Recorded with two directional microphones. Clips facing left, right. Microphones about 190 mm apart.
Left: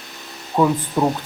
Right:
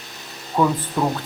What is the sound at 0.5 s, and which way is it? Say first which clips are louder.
Speech: left 2 dB; 20° left (ahead or behind).